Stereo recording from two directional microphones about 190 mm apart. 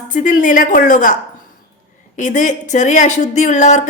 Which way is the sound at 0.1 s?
45° left (ahead or behind).